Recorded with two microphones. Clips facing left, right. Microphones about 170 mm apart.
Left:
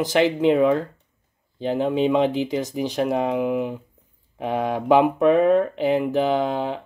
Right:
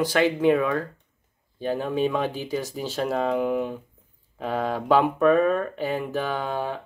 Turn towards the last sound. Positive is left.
turn(degrees=20)  # may be behind; listen again after turning